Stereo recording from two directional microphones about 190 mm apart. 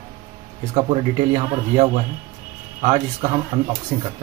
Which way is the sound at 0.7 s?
35° right (ahead or behind).